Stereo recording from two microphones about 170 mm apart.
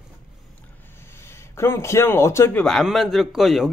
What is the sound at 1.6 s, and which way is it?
Speech, 15° left (ahead or behind).